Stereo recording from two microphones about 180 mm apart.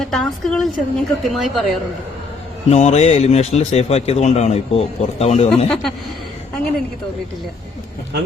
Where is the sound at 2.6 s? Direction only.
35° left (ahead or behind).